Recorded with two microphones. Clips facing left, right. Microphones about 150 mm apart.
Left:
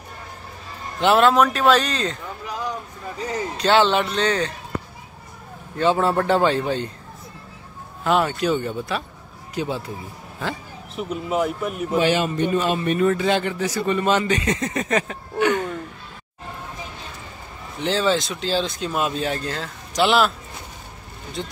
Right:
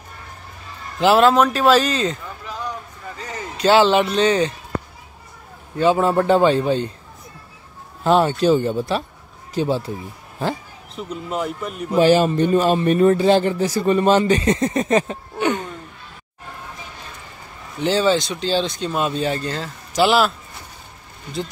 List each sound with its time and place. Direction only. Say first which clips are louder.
1.0 s speech: right 2 dB; centre (ahead or behind)
3.5 s speech: right 4 dB; 5° right (ahead or behind)
5.8 s speech: right 3 dB; 15° right (ahead or behind)
8.0 s speech: right 4 dB; 30° right (ahead or behind)
11.0 s speech: left 3 dB; 5° left (ahead or behind)
12.0 s speech: right 7 dB; 40° right (ahead or behind)
17.7 s speech: right 3 dB; centre (ahead or behind)